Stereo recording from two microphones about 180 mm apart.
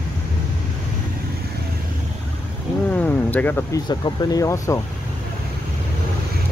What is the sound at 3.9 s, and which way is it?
Speech, 25° left (ahead or behind).